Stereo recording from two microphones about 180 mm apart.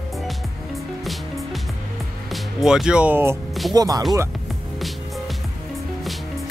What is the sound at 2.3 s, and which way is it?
Speech, centre (ahead or behind).